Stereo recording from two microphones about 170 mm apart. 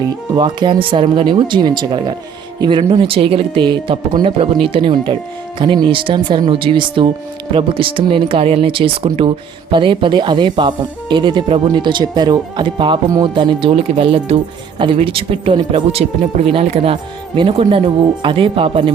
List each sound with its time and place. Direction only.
0.3 s speech: 25° right (ahead or behind)